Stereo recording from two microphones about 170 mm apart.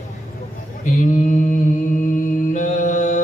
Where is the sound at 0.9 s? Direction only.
45° left (ahead or behind).